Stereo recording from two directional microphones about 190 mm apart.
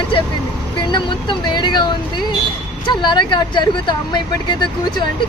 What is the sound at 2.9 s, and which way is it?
Speech, 25° left (ahead or behind).